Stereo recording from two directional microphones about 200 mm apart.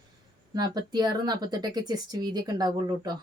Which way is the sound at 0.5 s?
20° right (ahead or behind).